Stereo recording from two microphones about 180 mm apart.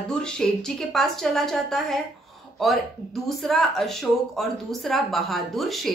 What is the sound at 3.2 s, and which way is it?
A woman's voice, centre (ahead or behind).